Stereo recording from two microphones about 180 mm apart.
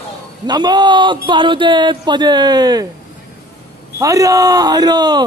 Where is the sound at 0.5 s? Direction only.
25° right (ahead or behind).